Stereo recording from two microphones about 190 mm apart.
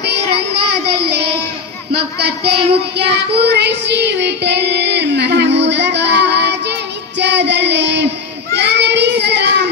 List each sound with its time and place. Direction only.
0.0 s child singing: 60° right (ahead or behind)